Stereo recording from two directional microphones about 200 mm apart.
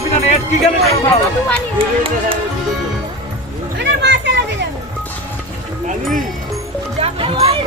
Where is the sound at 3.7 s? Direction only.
60° right (ahead or behind).